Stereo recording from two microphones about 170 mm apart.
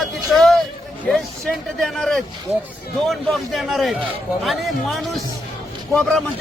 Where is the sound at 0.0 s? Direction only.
Centre (ahead or behind).